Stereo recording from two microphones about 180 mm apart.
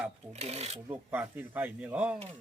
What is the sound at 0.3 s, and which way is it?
Filing, 35° right (ahead or behind).